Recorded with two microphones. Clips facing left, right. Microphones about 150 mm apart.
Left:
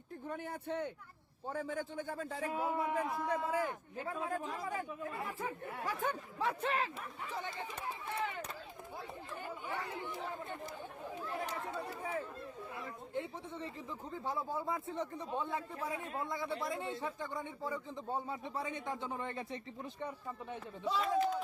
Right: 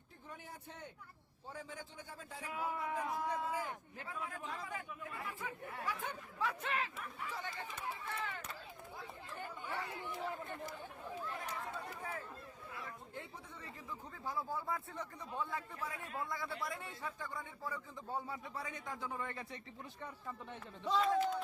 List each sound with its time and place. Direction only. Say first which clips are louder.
0.3 s a man's voice: left 11 dB; 60° left (ahead or behind)
1.5 s a man's voice: left 10 dB; 50° left (ahead or behind)
2.5 s a man's voice: left 3 dB; 30° left (ahead or behind)
2.9 s a man's voice: left 3 dB; 60° left (ahead or behind)
4.1 s a man's voice: left 5 dB; 45° left (ahead or behind)
6.4 s a man's voice: left 4 dB; 30° left (ahead or behind)
9.6 s speech: left 2 dB; 15° left (ahead or behind)
12.7 s a man's voice: left 7 dB; 25° left (ahead or behind); by 21.4 s 5° left (ahead or behind)